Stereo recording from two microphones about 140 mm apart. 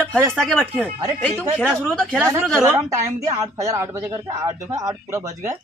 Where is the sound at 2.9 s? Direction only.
25° right (ahead or behind).